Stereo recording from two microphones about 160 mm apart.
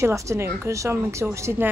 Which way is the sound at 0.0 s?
20° right (ahead or behind).